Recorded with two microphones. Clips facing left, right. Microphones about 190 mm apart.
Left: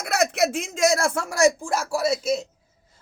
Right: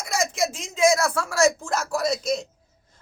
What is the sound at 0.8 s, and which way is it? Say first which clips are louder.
Speech: right 2 dB; 35° left (ahead or behind).